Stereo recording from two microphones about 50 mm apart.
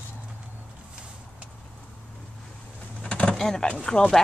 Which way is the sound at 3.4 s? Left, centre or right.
Centre.